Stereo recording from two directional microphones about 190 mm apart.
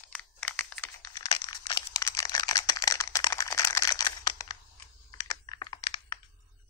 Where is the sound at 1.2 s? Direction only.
20° left (ahead or behind).